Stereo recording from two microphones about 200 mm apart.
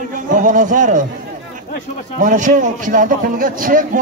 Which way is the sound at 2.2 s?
40° right (ahead or behind).